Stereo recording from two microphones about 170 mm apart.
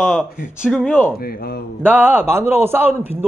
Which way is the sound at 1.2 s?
65° left (ahead or behind).